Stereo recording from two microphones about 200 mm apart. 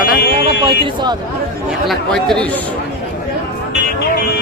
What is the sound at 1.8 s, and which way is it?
Speech, centre (ahead or behind).